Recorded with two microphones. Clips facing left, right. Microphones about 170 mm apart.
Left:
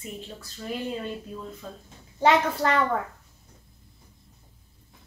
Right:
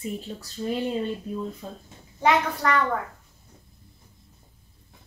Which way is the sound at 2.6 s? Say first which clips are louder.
Right 2 dB; 30° left (ahead or behind).